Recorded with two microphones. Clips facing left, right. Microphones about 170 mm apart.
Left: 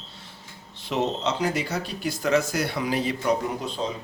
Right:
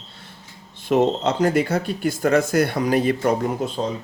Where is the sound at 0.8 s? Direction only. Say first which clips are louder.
Right 7 dB; 50° right (ahead or behind).